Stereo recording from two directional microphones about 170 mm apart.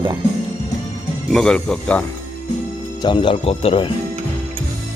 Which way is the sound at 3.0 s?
30° left (ahead or behind).